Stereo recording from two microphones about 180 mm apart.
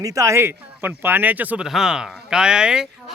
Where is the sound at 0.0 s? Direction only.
15° right (ahead or behind).